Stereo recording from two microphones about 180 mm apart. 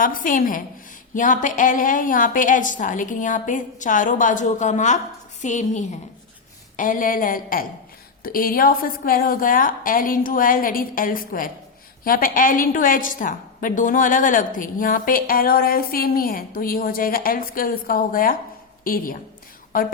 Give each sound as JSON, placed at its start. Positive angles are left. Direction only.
{"t": 0.0, "sound": "a woman's voice", "side_deg": 50}